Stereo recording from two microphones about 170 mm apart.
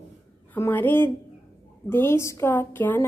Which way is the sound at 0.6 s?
10° left (ahead or behind).